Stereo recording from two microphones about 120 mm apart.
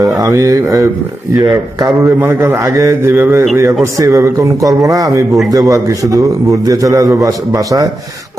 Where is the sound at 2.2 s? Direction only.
20° right (ahead or behind).